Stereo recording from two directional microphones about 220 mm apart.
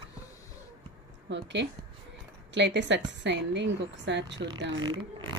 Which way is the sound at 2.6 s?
55° right (ahead or behind).